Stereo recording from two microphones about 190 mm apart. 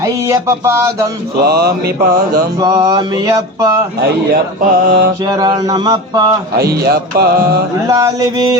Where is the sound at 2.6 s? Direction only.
20° right (ahead or behind).